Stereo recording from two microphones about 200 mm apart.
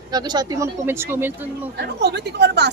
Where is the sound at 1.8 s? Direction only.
55° right (ahead or behind).